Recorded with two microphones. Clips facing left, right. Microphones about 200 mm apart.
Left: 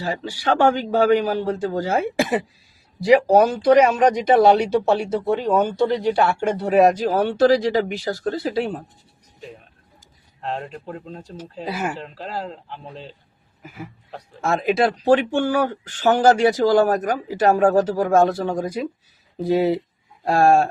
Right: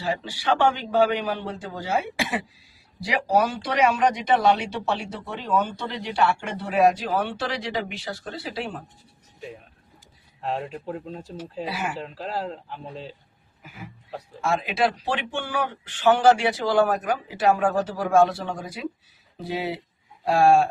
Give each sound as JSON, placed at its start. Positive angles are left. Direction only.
{"t": 0.0, "sound": "speech", "side_deg": 45}
{"t": 10.4, "sound": "speech", "side_deg": 0}
{"t": 13.6, "sound": "speech", "side_deg": 45}